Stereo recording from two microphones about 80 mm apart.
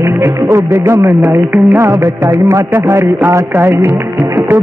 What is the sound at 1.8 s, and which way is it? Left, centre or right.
Music, right.